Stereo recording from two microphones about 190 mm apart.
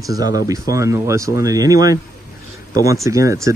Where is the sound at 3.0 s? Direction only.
15° right (ahead or behind).